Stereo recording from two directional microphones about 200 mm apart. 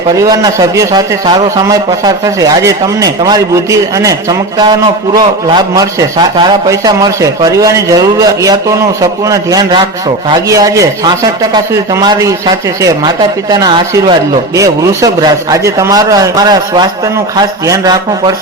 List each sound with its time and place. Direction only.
0.2 s a man's voice: 20° right (ahead or behind)